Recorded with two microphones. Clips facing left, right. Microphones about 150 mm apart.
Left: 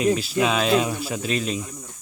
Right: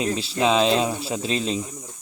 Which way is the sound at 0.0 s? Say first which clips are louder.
Left 2 dB; 30° right (ahead or behind).